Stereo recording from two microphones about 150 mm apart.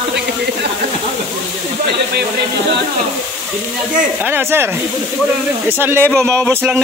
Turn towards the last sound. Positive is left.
turn(degrees=5)  # may be behind; listen again after turning